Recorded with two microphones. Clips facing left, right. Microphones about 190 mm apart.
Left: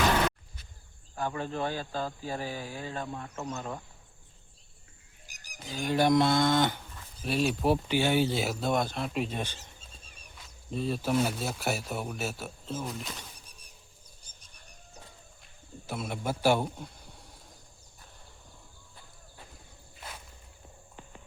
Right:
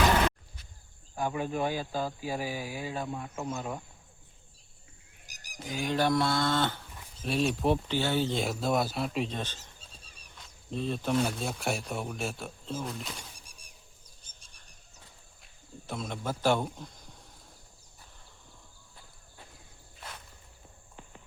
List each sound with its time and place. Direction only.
1.1 s speech: 10° right (ahead or behind)
6.0 s speech: 20° left (ahead or behind)
7.2 s speech: centre (ahead or behind)
13.1 s a sound: 10° right (ahead or behind)
15.9 s speech: 5° left (ahead or behind)